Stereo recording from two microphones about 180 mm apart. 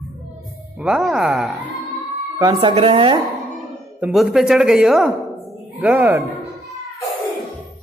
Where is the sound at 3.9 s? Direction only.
10° right (ahead or behind).